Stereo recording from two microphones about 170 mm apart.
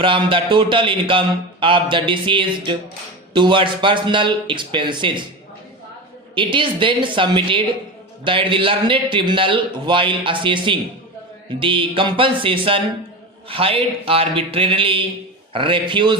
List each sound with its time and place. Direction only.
0.0 s a man's voice: 30° right (ahead or behind)
6.3 s a man's voice: 30° right (ahead or behind)